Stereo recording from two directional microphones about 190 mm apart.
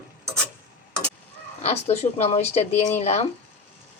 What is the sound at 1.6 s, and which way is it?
A woman's voice, 35° left (ahead or behind).